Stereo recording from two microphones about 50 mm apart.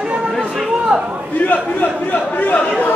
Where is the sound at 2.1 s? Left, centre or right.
Left.